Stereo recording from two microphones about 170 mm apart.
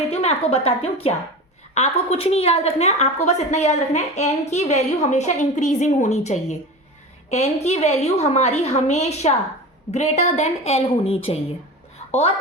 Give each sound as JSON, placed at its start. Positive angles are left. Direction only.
{"t": 0.1, "sound": "a woman's voice", "side_deg": 35}